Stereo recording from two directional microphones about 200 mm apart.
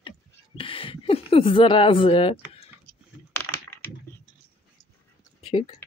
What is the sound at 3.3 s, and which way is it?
Computer keyboard, 10° left (ahead or behind).